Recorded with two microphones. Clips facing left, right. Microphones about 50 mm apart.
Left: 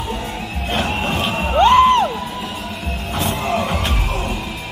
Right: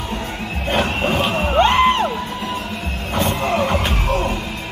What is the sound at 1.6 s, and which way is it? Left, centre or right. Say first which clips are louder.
Music: left 4 dB; right.